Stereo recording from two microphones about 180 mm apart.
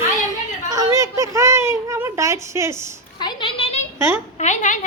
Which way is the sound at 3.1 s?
25° left (ahead or behind).